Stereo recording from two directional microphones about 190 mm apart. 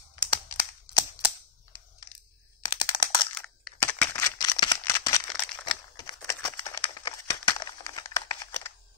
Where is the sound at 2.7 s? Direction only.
25° left (ahead or behind).